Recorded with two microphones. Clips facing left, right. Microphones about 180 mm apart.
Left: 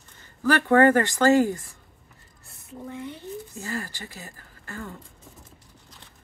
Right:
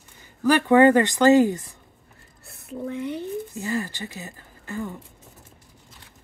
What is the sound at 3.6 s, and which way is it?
Speech, 20° right (ahead or behind).